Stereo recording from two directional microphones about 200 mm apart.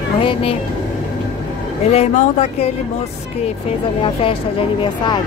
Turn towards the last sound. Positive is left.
turn(degrees=25)  # may be behind; listen again after turning